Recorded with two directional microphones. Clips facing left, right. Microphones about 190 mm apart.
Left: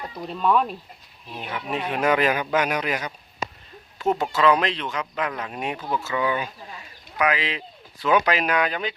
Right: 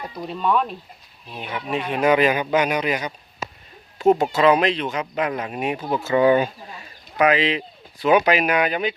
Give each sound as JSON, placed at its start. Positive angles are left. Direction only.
{"t": 0.3, "sound": "speech", "side_deg": 0}
{"t": 3.9, "sound": "speech", "side_deg": -30}
{"t": 4.3, "sound": "speech", "side_deg": -15}
{"t": 6.1, "sound": "speech", "side_deg": -40}
{"t": 7.2, "sound": "speech", "side_deg": -25}